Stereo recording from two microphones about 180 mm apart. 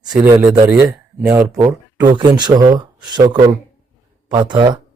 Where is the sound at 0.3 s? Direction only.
15° right (ahead or behind).